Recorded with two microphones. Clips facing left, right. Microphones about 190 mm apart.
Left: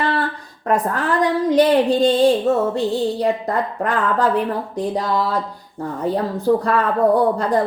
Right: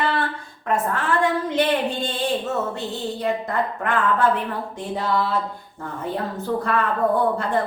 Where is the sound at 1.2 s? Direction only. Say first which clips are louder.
Left 8 dB; 35° left (ahead or behind).